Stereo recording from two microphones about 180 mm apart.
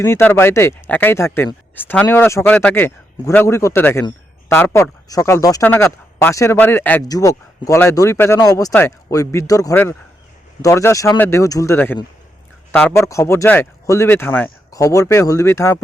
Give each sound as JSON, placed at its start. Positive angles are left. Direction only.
{"t": 0.0, "sound": "speech", "side_deg": 10}